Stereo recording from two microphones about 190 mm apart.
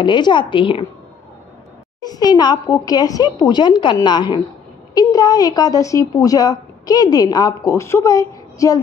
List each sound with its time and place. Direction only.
0.0 s a woman's voice: 25° left (ahead or behind)
2.0 s a woman's voice: 20° left (ahead or behind)